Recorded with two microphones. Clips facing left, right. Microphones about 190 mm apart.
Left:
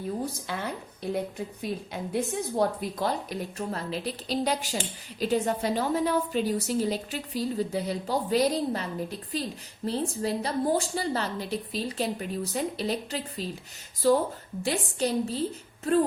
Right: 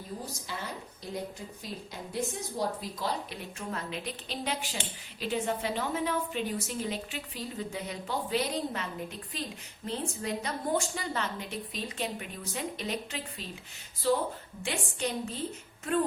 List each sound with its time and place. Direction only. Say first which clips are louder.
0.4 s a woman's voice: left 6 dB; 60° left (ahead or behind)
3.2 s a woman's voice: left 6 dB; 40° left (ahead or behind)